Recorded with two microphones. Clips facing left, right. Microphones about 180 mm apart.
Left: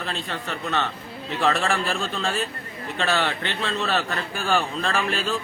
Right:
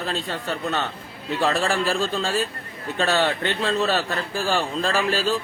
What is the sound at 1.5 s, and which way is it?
A man's voice, 35° right (ahead or behind).